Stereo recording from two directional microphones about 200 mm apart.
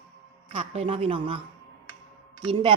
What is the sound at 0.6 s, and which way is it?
Speech, 30° right (ahead or behind).